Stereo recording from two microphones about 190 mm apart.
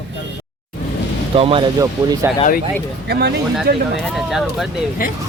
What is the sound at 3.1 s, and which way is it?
Speech, 60° right (ahead or behind).